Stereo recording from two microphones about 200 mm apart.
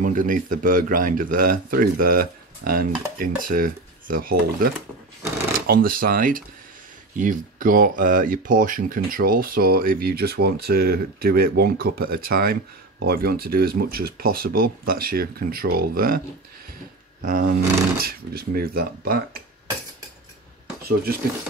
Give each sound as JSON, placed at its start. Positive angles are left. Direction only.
{"t": 0.0, "sound": "speech", "side_deg": -40}
{"t": 5.7, "sound": "speech", "side_deg": -45}
{"t": 17.2, "sound": "speech", "side_deg": -40}